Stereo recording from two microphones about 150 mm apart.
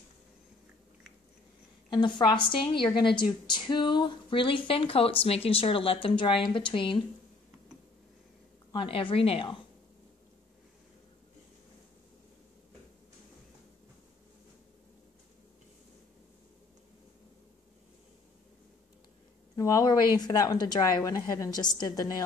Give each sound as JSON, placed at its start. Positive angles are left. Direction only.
{"t": 1.9, "sound": "a woman's voice", "side_deg": 30}
{"t": 8.7, "sound": "a woman's voice", "side_deg": 35}
{"t": 19.5, "sound": "a woman's voice", "side_deg": 25}